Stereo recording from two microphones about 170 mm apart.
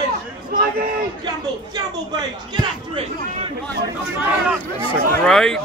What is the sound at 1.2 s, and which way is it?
Speech, 25° right (ahead or behind).